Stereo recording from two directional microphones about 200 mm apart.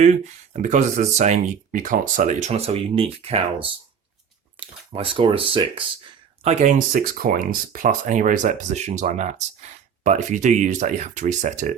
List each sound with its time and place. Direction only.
0.0 s speech: 35° right (ahead or behind)
6.4 s speech: 35° right (ahead or behind)